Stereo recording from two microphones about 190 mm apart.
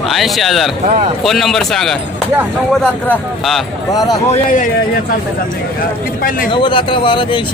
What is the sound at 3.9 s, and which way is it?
Speech, 20° left (ahead or behind).